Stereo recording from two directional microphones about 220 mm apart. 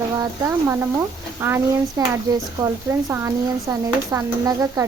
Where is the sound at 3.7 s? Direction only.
15° right (ahead or behind).